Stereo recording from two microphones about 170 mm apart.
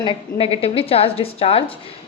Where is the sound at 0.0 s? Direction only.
30° left (ahead or behind).